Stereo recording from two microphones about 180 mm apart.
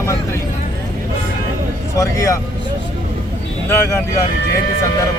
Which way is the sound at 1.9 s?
15° left (ahead or behind).